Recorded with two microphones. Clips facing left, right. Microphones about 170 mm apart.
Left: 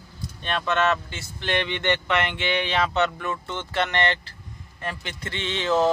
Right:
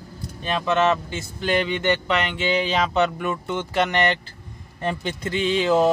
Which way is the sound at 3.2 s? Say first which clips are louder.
Right 5 dB; 10° right (ahead or behind).